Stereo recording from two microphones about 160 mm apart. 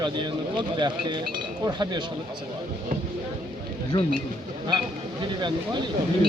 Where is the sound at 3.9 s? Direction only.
25° left (ahead or behind).